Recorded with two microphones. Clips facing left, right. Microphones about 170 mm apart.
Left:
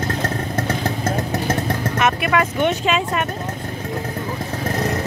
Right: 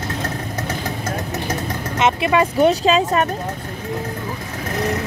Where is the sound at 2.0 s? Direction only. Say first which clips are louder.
Right 3 dB; 25° right (ahead or behind).